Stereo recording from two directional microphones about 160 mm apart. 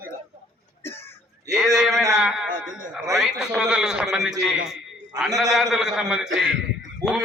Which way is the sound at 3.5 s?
5° right (ahead or behind).